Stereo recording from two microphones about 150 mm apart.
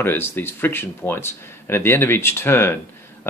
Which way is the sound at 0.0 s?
15° left (ahead or behind).